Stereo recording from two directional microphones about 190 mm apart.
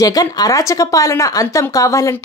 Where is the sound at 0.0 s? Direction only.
20° left (ahead or behind).